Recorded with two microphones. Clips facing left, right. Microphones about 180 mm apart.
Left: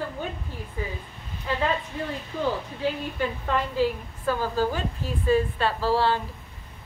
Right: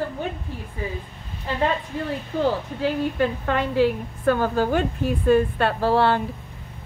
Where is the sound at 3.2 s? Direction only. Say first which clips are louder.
Right 1 dB; 65° right (ahead or behind).